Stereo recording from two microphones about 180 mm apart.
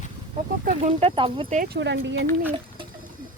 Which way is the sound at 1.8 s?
80° right.